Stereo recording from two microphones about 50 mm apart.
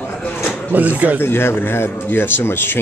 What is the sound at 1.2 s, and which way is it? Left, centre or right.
Speech, left.